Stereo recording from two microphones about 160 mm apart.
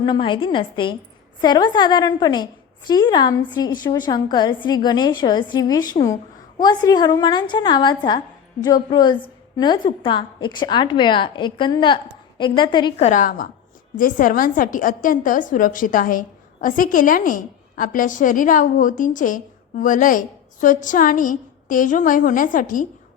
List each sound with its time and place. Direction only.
0.0 s a woman's voice: 30° left (ahead or behind)
13.0 s a woman's voice: 50° left (ahead or behind)